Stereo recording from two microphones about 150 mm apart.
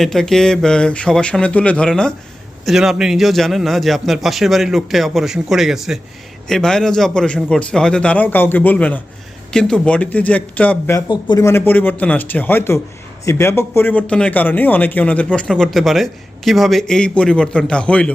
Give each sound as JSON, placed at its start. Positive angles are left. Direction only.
{"t": 0.0, "sound": "a man's voice", "side_deg": 0}
{"t": 11.1, "sound": "speech", "side_deg": 25}